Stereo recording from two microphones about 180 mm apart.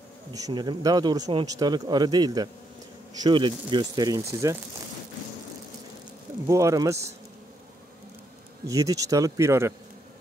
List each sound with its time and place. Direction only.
0.3 s a man's voice: 20° right (ahead or behind)
6.4 s speech: 15° right (ahead or behind)
8.6 s a man's voice: 20° right (ahead or behind)